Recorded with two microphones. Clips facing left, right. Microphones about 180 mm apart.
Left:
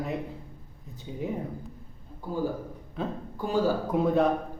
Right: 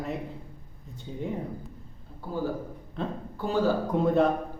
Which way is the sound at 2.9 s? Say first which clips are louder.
Even; 5° left (ahead or behind).